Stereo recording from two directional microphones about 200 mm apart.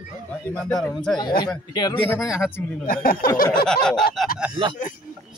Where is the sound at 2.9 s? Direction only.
45° left (ahead or behind).